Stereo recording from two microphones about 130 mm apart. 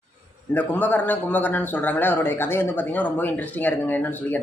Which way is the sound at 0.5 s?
15° left (ahead or behind).